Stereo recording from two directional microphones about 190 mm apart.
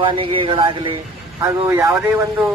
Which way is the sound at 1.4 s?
15° right (ahead or behind).